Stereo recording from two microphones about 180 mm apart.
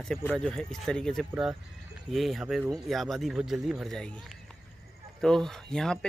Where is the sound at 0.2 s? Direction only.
5° left (ahead or behind).